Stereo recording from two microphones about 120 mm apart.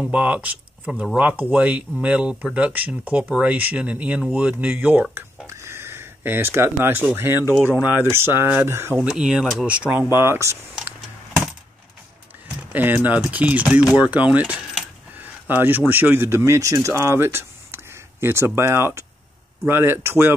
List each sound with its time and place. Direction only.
0.0 s speech: 10° right (ahead or behind)
5.1 s a sound: 20° right (ahead or behind)
7.8 s speech: 15° right (ahead or behind)
8.9 s speech: 5° right (ahead or behind)
10.1 s speech: 20° right (ahead or behind)
12.7 s speech: 15° right (ahead or behind)
15.1 s a sound: 15° right (ahead or behind)
15.9 s speech: 15° right (ahead or behind)